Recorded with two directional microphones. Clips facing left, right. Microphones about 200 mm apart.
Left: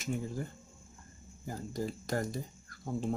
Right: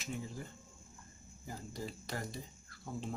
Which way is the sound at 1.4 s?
45° left (ahead or behind).